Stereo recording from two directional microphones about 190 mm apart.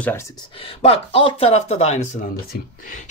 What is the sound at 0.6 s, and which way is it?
Speech, 30° left (ahead or behind).